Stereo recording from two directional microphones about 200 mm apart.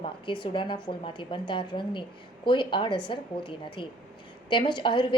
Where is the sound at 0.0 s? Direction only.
25° left (ahead or behind).